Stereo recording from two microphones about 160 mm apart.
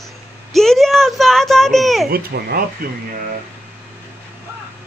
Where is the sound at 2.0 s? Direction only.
70° right (ahead or behind).